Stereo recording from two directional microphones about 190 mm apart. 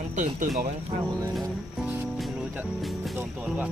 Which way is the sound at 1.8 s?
5° right (ahead or behind).